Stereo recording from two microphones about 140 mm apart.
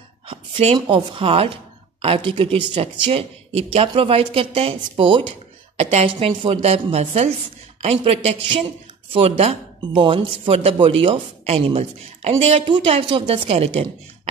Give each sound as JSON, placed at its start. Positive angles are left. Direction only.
{"t": 0.3, "sound": "dog", "side_deg": -45}
{"t": 0.7, "sound": "speech", "side_deg": -35}
{"t": 5.8, "sound": "a woman's voice", "side_deg": -50}
{"t": 9.9, "sound": "speech", "side_deg": -40}